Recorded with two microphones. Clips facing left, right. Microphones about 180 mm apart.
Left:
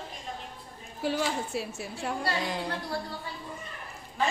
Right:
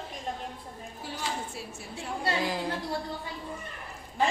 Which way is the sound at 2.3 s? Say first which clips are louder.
Right 2 dB; centre (ahead or behind).